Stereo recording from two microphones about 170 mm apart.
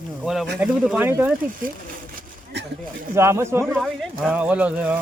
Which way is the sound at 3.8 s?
5° right (ahead or behind).